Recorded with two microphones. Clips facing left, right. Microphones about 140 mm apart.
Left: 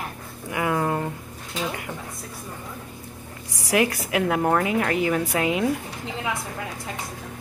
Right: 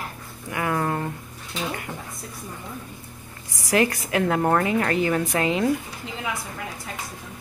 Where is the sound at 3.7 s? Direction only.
10° left (ahead or behind).